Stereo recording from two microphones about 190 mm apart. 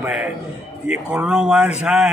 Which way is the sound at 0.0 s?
5° right (ahead or behind).